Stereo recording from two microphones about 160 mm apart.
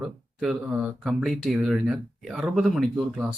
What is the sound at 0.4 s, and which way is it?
Speech, 5° right (ahead or behind).